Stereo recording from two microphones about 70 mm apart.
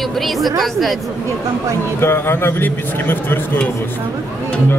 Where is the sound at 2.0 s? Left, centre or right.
Left.